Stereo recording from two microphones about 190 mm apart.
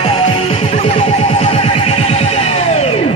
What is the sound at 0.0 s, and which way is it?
Music, 30° left (ahead or behind).